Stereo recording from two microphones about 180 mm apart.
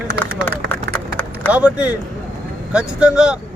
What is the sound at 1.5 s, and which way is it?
Speech, 10° right (ahead or behind).